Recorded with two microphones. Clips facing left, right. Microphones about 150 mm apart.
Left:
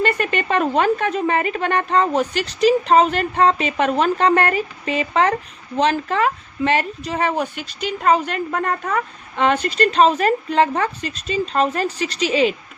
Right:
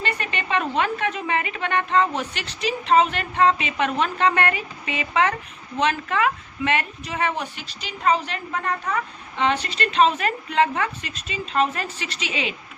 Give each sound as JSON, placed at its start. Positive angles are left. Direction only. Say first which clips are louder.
{"t": 0.0, "sound": "a woman's voice", "louder": "left 8 dB", "side_deg": 50}